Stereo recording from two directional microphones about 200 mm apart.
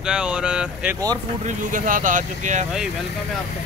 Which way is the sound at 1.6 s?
40° right (ahead or behind).